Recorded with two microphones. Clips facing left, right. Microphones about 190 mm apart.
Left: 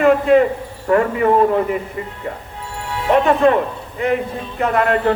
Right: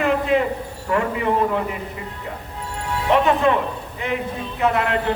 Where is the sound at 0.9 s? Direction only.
50° left (ahead or behind).